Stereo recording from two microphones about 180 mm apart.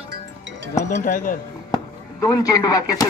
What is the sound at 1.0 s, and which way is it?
Speech, 45° left (ahead or behind).